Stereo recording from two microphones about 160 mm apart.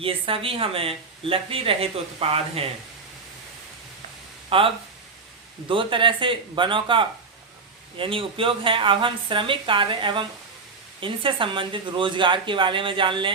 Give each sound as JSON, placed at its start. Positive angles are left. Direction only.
{"t": 0.0, "sound": "speech", "side_deg": -35}
{"t": 4.4, "sound": "speech", "side_deg": -35}